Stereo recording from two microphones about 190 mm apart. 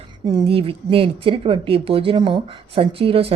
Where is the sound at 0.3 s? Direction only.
25° right (ahead or behind).